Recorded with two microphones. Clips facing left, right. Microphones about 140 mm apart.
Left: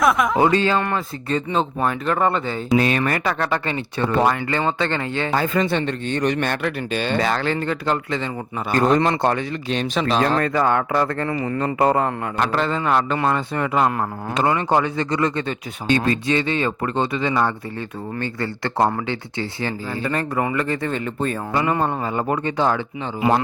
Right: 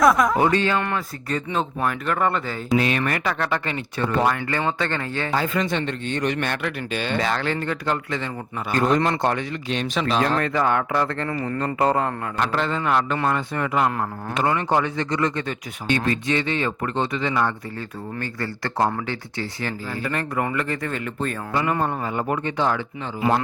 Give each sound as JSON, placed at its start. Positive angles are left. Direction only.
{"t": 0.0, "sound": "speech", "side_deg": 0}
{"t": 0.3, "sound": "speech", "side_deg": 30}
{"t": 2.7, "sound": "speech", "side_deg": 40}
{"t": 5.3, "sound": "speech", "side_deg": 45}
{"t": 8.7, "sound": "speech", "side_deg": 35}
{"t": 11.3, "sound": "speech", "side_deg": 15}
{"t": 11.8, "sound": "speech", "side_deg": 30}
{"t": 12.4, "sound": "speech", "side_deg": 35}